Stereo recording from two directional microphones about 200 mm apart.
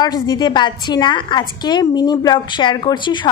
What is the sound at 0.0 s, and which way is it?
A woman's voice, 20° left (ahead or behind).